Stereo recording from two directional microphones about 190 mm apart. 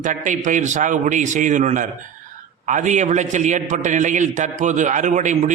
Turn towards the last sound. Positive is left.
turn(degrees=-40)  # may be behind; listen again after turning